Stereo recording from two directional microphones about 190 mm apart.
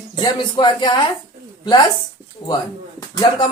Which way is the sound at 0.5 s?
25° left (ahead or behind).